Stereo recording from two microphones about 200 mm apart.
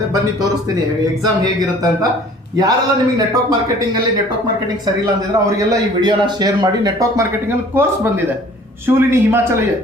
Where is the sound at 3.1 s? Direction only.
20° right (ahead or behind).